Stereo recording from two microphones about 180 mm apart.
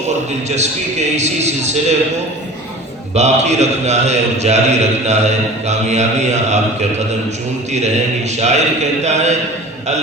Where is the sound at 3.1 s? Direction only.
40° right (ahead or behind).